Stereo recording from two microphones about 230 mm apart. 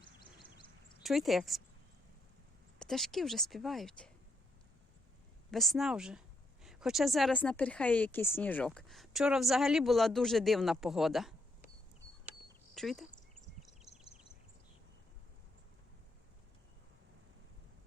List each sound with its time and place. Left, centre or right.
0.0 s a sound: centre
1.0 s speech: centre
2.7 s speech: centre
5.5 s speech: centre
12.7 s speech: centre
13.6 s a sound: centre